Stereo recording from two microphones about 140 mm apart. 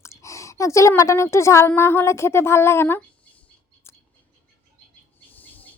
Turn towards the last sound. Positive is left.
turn(degrees=10)  # may be behind; listen again after turning